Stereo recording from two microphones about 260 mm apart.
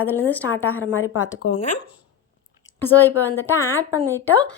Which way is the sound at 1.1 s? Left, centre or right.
Left.